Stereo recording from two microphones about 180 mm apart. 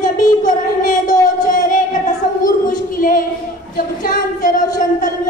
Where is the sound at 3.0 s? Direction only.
50° left (ahead or behind).